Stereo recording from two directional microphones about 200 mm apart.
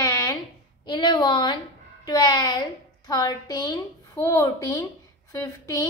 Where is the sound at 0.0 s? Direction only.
15° left (ahead or behind).